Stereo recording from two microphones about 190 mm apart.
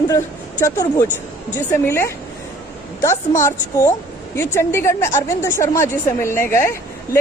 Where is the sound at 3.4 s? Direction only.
15° left (ahead or behind).